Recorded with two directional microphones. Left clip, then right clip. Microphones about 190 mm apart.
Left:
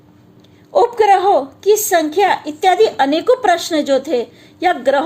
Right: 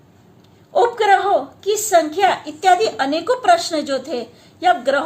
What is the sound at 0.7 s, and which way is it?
A woman's voice, 35° left (ahead or behind).